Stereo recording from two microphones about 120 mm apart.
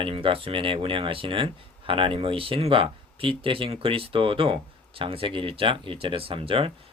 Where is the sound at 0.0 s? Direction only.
45° right (ahead or behind).